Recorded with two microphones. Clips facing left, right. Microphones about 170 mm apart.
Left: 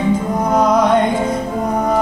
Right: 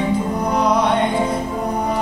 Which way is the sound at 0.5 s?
45° left (ahead or behind).